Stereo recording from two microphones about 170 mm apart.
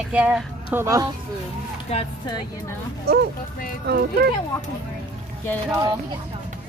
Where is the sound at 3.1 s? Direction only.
70° right (ahead or behind).